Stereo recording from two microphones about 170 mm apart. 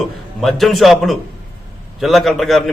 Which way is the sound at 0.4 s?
Centre (ahead or behind).